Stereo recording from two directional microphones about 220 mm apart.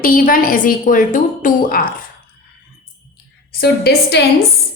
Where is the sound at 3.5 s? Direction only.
45° left (ahead or behind).